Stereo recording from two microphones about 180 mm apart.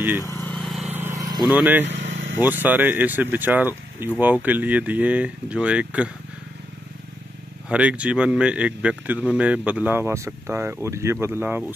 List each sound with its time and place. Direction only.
0.4 s vehicle: centre (ahead or behind)
0.8 s vehicle: 10° right (ahead or behind)
1.4 s speech: 10° right (ahead or behind)
1.9 s vehicle: 45° right (ahead or behind)
2.4 s speech: 10° right (ahead or behind)
7.7 s speech: 5° right (ahead or behind)